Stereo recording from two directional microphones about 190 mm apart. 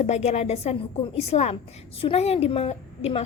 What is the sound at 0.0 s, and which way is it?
A woman's voice, 35° left (ahead or behind).